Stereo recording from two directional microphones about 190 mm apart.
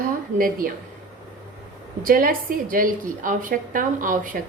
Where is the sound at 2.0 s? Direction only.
45° right (ahead or behind).